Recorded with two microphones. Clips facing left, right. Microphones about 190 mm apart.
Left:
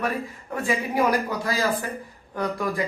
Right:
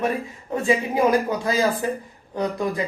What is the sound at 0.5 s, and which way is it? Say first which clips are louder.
Speech: right 4 dB; 25° right (ahead or behind).